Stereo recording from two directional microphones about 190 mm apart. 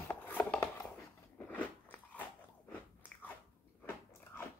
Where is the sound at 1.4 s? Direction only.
10° left (ahead or behind).